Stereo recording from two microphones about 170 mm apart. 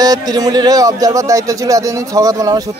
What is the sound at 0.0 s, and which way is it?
Speech, 20° right (ahead or behind).